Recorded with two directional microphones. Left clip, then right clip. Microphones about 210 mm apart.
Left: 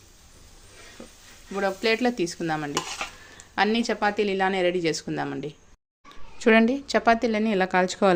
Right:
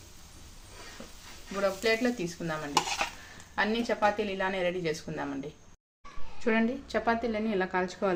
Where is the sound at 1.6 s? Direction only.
50° left (ahead or behind).